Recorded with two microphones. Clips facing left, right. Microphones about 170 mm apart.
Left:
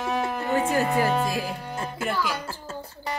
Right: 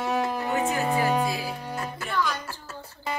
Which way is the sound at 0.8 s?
15° right (ahead or behind).